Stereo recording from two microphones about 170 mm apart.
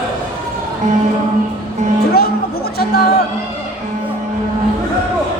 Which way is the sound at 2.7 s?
70° left (ahead or behind).